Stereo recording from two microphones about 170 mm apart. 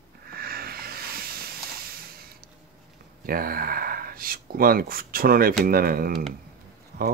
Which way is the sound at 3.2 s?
60° right (ahead or behind).